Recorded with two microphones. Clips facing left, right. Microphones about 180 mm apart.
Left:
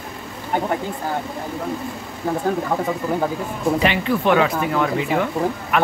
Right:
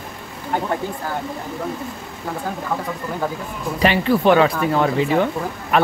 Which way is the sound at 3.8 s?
35° right (ahead or behind).